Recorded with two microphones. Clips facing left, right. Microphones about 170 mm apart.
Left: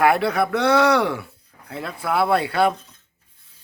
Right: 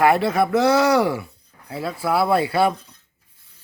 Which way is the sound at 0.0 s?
Centre (ahead or behind).